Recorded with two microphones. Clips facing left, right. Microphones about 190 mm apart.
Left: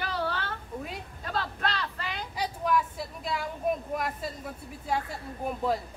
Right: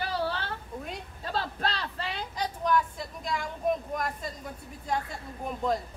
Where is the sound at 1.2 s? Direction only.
30° right (ahead or behind).